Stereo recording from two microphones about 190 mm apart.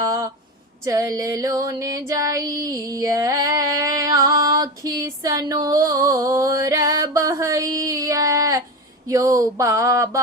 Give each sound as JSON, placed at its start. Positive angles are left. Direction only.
{"t": 0.0, "sound": "a sound", "side_deg": -15}
{"t": 0.9, "sound": "female singing", "side_deg": -15}
{"t": 9.0, "sound": "speech", "side_deg": -15}